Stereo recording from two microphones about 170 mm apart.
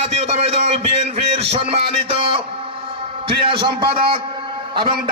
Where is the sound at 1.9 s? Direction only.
35° right (ahead or behind).